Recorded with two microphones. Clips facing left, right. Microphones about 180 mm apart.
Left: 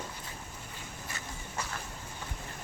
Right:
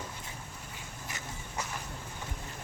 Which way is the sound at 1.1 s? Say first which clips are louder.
Right 1 dB; 15° right (ahead or behind).